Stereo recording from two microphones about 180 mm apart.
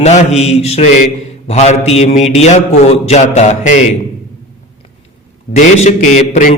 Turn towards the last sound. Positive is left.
turn(degrees=45)  # may be behind; listen again after turning